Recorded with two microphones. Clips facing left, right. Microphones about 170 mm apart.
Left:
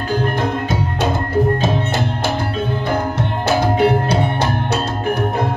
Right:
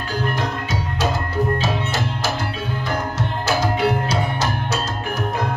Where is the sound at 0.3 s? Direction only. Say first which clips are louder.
Left 5 dB; 55° left (ahead or behind).